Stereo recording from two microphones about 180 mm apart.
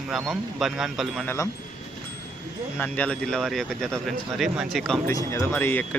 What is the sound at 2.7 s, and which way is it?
Speech, 10° left (ahead or behind).